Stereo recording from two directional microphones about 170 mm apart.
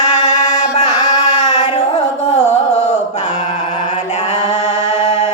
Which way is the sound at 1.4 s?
40° left (ahead or behind).